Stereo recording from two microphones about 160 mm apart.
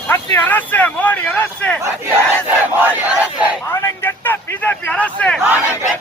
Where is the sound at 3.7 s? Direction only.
20° left (ahead or behind).